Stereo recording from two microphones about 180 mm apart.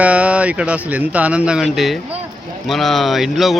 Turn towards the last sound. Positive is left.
turn(degrees=0)  # may be behind; listen again after turning